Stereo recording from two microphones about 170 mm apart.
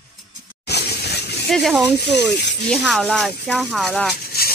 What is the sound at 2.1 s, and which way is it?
Speech, 90° left.